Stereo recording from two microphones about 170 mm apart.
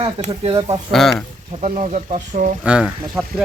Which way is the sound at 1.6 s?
45° right (ahead or behind).